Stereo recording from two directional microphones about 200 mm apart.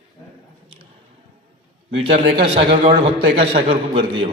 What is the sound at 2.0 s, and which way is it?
A man's voice, 25° right (ahead or behind).